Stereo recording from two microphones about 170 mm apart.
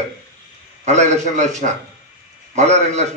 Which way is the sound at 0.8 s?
45° right (ahead or behind).